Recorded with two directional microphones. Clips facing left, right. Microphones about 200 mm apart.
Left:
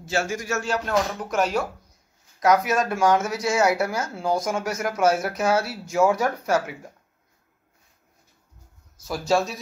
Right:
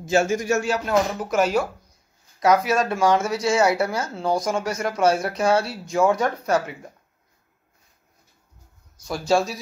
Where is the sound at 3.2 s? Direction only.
25° right (ahead or behind).